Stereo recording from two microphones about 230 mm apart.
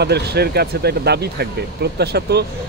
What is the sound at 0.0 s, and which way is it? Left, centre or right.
Speech, right.